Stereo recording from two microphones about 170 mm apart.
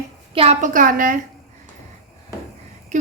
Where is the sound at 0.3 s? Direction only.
45° right (ahead or behind).